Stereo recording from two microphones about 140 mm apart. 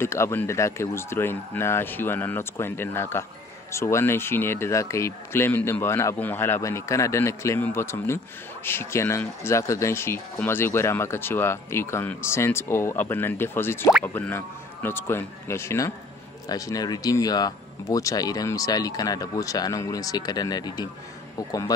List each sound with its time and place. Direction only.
0.0 s speech: 20° left (ahead or behind)